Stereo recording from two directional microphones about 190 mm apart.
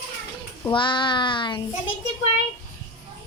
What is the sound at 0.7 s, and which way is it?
Speech, 25° left (ahead or behind).